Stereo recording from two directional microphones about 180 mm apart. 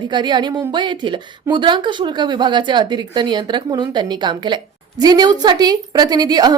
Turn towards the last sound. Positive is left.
turn(degrees=-20)  # may be behind; listen again after turning